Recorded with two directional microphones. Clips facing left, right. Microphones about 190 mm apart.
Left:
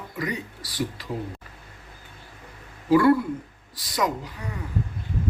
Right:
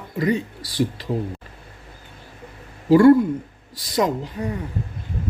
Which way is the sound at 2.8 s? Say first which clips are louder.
Right 6 dB; 25° right (ahead or behind).